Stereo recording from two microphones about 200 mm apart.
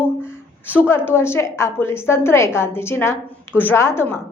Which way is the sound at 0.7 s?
10° left (ahead or behind).